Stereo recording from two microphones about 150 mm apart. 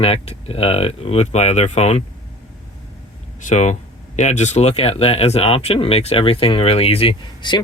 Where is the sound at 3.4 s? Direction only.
50° left (ahead or behind).